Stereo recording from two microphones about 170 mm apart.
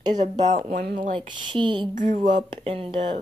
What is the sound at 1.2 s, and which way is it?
Speech, 30° right (ahead or behind).